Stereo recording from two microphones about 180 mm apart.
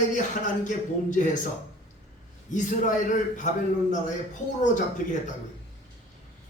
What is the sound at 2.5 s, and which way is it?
Speech, 45° left (ahead or behind).